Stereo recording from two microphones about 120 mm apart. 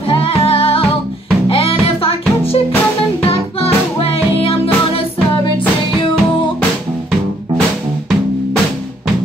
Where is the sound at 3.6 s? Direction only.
55° left (ahead or behind).